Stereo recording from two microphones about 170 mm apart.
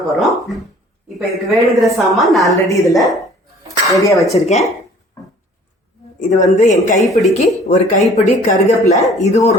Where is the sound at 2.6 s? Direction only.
20° left (ahead or behind).